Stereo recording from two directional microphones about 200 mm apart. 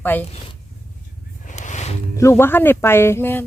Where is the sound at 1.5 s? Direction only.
35° left (ahead or behind).